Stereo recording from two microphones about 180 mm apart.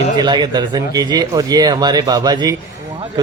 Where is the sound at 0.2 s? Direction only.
25° right (ahead or behind).